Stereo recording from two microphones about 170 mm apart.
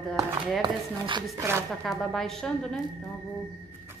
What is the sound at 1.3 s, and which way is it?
Speech, 15° right (ahead or behind).